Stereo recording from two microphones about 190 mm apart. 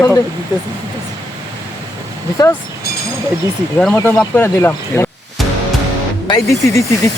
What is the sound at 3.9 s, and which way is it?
Speech, 10° left (ahead or behind).